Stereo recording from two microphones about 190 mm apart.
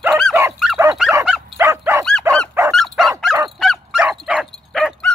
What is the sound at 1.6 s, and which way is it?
Dog, 15° right (ahead or behind).